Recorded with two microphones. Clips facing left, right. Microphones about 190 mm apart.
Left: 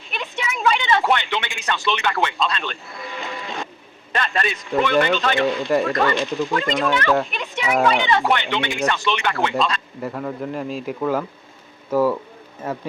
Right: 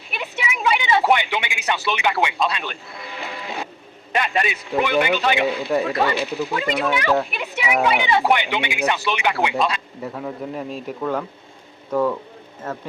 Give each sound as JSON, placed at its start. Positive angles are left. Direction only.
{"t": 0.1, "sound": "speech", "side_deg": -10}
{"t": 4.1, "sound": "speech", "side_deg": -10}
{"t": 6.0, "sound": "speech", "side_deg": -15}
{"t": 10.0, "sound": "a man's voice", "side_deg": 0}